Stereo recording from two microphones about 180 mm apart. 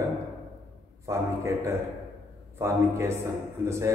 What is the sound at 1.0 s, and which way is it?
A man's voice, 15° right (ahead or behind).